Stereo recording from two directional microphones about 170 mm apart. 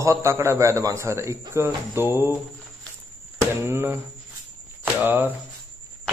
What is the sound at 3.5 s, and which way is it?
Speech, 15° right (ahead or behind).